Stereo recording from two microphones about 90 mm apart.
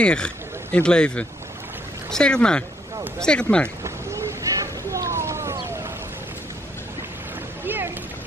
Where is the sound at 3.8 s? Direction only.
30° right (ahead or behind).